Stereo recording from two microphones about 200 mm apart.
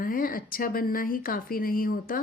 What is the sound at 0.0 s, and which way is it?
Speech, 45° left (ahead or behind).